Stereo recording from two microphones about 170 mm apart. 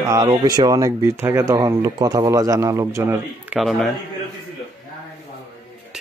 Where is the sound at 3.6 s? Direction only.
Centre (ahead or behind).